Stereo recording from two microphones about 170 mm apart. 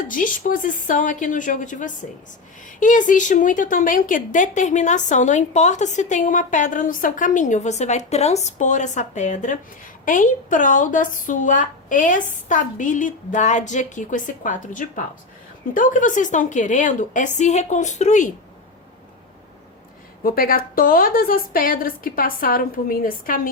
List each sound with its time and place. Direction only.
0.0 s a woman's voice: 50° left (ahead or behind)
20.2 s a woman's voice: 60° left (ahead or behind)